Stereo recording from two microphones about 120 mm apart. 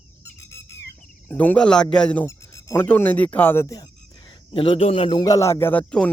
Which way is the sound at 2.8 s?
15° left (ahead or behind).